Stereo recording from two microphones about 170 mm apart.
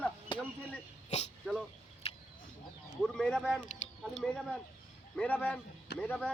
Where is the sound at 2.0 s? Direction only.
35° left (ahead or behind).